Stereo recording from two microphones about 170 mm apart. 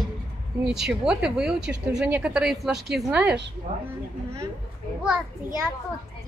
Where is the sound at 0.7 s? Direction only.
5° right (ahead or behind).